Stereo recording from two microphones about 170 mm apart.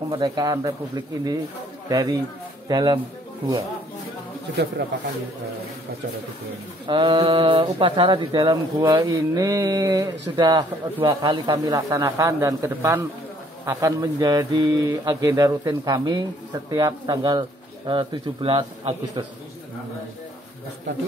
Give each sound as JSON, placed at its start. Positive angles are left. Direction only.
{"t": 0.1, "sound": "speech", "side_deg": -25}
{"t": 4.8, "sound": "speech", "side_deg": -90}
{"t": 6.9, "sound": "speech", "side_deg": -30}